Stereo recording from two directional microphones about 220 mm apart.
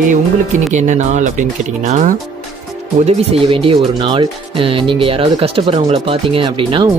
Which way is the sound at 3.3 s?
25° right (ahead or behind).